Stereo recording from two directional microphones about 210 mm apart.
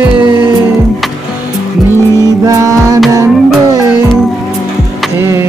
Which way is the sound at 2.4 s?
15° right (ahead or behind).